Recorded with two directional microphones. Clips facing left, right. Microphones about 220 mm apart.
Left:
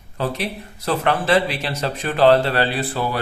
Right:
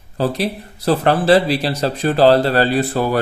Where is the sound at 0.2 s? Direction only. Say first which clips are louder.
Right 5 dB; 35° right (ahead or behind).